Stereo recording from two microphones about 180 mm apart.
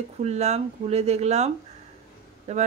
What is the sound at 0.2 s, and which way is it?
Speech, 40° right (ahead or behind).